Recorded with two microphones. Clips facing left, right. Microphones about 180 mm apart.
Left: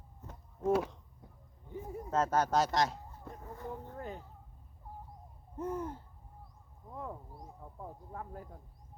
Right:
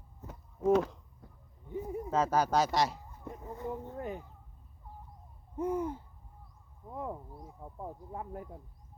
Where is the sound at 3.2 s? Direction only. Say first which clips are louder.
Right 6 dB; 20° right (ahead or behind).